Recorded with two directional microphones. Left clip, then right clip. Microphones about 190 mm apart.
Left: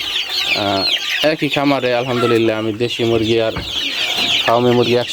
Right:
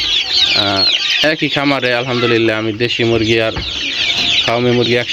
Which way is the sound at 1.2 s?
5° left (ahead or behind).